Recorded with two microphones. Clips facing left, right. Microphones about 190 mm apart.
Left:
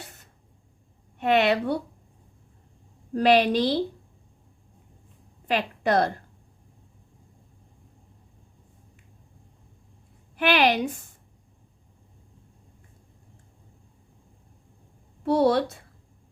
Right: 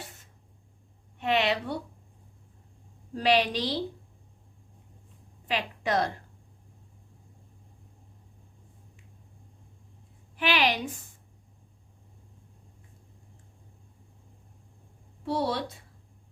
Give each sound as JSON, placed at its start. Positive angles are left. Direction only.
{"t": 1.2, "sound": "a woman's voice", "side_deg": 60}
{"t": 3.1, "sound": "a woman's voice", "side_deg": 50}
{"t": 5.5, "sound": "a woman's voice", "side_deg": 55}
{"t": 10.3, "sound": "a woman's voice", "side_deg": 50}
{"t": 15.2, "sound": "a woman's voice", "side_deg": 60}